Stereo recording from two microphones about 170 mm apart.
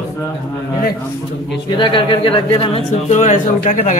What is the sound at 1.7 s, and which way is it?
A man's voice, 30° left (ahead or behind).